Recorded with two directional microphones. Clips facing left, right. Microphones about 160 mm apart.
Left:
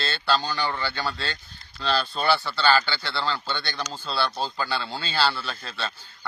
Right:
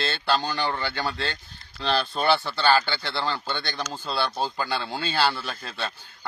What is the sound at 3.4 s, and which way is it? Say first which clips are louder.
Speech: even; 50° right (ahead or behind).